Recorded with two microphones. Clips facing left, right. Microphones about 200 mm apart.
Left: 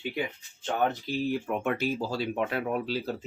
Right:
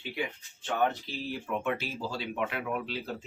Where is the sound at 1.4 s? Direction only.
45° left (ahead or behind).